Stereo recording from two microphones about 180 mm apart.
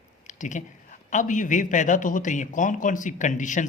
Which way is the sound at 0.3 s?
45° left (ahead or behind).